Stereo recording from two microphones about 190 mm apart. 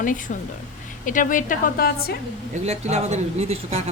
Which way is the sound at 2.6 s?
35° right (ahead or behind).